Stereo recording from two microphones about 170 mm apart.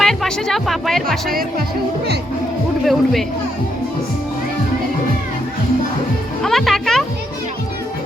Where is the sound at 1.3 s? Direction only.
60° right (ahead or behind).